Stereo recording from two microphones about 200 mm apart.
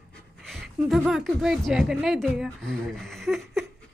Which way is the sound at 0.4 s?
Centre (ahead or behind).